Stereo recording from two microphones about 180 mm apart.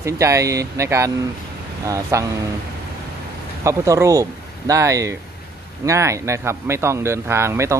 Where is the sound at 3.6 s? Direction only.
15° right (ahead or behind).